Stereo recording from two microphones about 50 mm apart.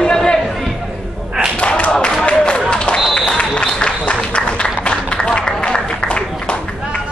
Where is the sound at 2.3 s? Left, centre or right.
Left.